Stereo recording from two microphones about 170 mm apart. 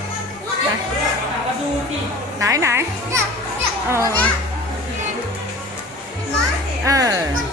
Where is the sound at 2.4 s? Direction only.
20° right (ahead or behind).